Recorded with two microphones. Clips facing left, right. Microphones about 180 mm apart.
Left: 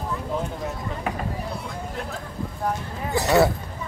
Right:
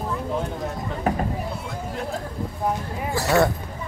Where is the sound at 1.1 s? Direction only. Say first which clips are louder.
Right 6 dB; 40° right (ahead or behind).